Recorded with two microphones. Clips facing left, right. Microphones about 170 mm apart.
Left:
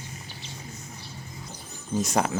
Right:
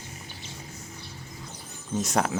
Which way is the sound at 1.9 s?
Centre (ahead or behind).